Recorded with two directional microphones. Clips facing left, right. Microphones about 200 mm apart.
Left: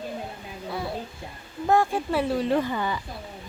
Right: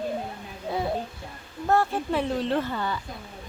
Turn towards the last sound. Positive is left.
turn(degrees=10)  # may be behind; listen again after turning